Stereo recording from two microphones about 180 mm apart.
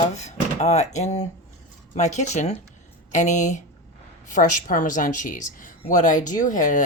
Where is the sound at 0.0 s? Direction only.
40° left (ahead or behind).